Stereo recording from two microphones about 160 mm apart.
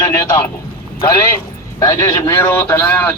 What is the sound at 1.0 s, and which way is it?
A man's voice, 25° left (ahead or behind).